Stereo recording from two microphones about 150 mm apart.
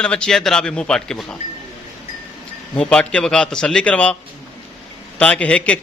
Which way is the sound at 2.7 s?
5° left (ahead or behind).